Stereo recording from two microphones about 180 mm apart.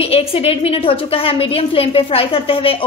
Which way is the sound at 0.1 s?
30° left (ahead or behind).